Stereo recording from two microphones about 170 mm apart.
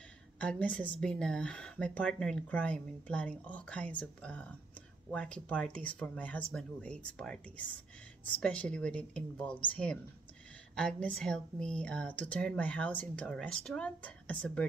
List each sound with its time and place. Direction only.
0.4 s a woman's voice: 5° left (ahead or behind)